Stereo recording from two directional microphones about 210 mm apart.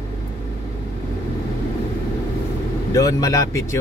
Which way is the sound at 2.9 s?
15° left (ahead or behind).